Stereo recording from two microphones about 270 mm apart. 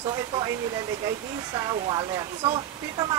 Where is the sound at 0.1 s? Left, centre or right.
Centre.